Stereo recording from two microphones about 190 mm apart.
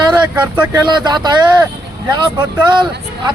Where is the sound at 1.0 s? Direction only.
20° right (ahead or behind).